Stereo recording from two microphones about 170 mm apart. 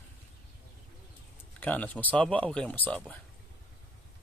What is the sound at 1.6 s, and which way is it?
Speech, 10° left (ahead or behind).